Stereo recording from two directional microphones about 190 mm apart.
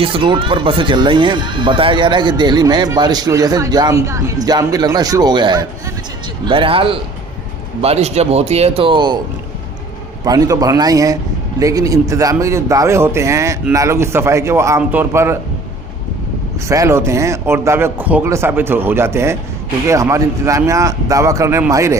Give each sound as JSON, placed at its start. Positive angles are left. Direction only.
{"t": 0.0, "sound": "speech", "side_deg": -25}
{"t": 10.2, "sound": "speech", "side_deg": -20}
{"t": 16.6, "sound": "speech", "side_deg": -15}